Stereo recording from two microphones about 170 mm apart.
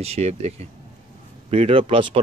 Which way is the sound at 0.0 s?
40° right (ahead or behind).